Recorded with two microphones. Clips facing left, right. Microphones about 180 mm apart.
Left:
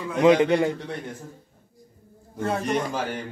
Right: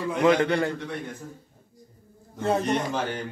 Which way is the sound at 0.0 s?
15° left (ahead or behind).